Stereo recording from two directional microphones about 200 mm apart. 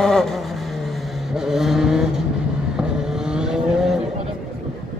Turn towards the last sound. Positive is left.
turn(degrees=0)  # may be behind; listen again after turning